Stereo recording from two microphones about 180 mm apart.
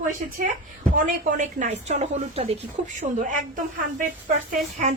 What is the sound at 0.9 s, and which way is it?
A woman's voice, 50° right (ahead or behind).